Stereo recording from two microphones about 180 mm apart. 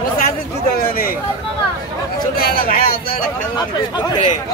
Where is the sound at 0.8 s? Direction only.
50° left (ahead or behind).